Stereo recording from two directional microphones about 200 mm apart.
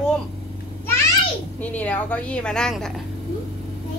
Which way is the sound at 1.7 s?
10° left (ahead or behind).